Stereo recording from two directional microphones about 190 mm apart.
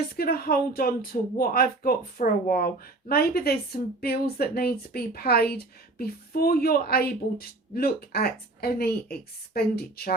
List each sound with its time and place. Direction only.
0.2 s speech: 50° left (ahead or behind)